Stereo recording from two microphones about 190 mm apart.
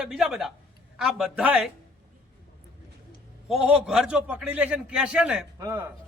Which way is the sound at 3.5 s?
5° right (ahead or behind).